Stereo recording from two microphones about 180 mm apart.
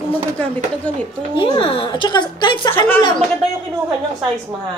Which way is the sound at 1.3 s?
30° left (ahead or behind).